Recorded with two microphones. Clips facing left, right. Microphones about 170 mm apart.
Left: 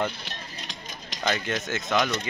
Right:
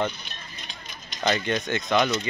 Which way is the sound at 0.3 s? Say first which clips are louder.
Left 3 dB; 90° left.